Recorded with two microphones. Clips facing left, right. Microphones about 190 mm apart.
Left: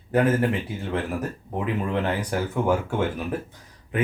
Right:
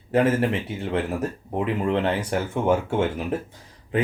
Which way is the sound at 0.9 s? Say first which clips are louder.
Right 2 dB; 25° right (ahead or behind).